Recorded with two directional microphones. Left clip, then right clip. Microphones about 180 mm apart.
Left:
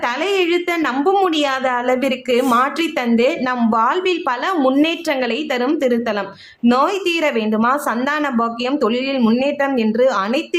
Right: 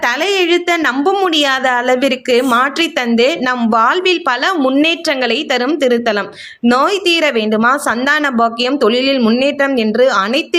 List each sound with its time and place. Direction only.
0.3 s a woman's voice: 15° right (ahead or behind)